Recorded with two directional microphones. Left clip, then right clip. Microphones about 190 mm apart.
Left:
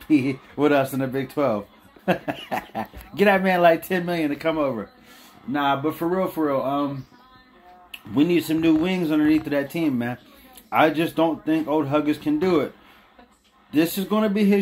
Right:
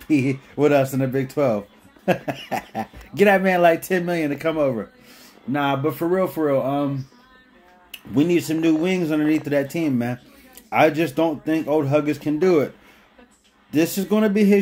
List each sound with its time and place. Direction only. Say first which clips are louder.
0.1 s speech: even; 15° right (ahead or behind)
8.1 s speech: right 1 dB; 15° right (ahead or behind)